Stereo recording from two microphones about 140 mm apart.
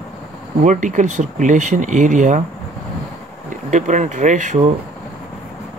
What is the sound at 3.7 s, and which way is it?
Speech, 60° right (ahead or behind).